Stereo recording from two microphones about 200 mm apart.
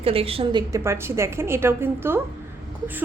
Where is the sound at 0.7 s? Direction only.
15° right (ahead or behind).